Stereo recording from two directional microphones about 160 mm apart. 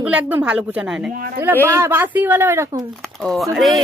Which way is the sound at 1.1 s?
65° right (ahead or behind).